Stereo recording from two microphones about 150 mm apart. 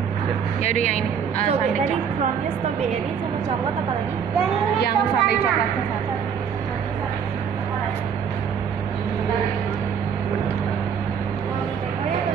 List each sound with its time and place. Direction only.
0.7 s speech: 60° right (ahead or behind)
4.7 s speech: 90° left